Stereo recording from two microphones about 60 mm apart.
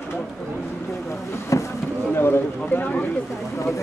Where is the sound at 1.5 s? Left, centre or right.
Left.